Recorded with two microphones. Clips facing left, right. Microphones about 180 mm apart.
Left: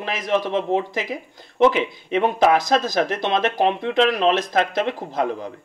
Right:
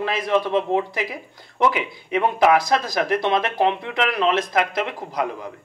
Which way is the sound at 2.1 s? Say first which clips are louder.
Even; 20° left (ahead or behind).